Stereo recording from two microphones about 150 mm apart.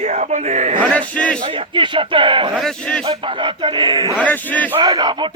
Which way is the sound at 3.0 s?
35° right (ahead or behind).